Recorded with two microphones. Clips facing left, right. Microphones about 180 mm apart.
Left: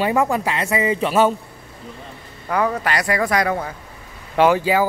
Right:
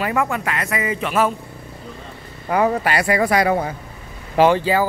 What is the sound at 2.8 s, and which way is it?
Speech, 5° right (ahead or behind).